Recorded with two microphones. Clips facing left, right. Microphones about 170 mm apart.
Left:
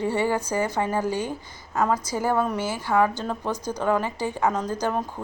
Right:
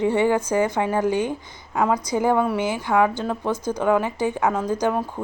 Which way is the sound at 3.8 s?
10° right (ahead or behind).